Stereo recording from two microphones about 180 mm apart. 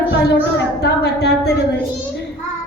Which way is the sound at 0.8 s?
65° left (ahead or behind).